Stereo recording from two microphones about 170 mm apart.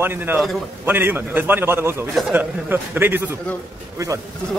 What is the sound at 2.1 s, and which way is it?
Speech, centre (ahead or behind).